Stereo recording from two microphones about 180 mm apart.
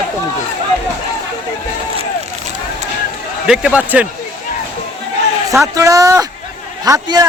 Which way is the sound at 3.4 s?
5° right (ahead or behind).